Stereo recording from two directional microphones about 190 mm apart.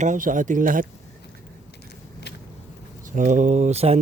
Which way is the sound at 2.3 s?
60° left (ahead or behind).